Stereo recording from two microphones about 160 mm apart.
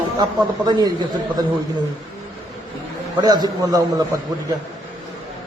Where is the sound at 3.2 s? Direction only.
25° right (ahead or behind).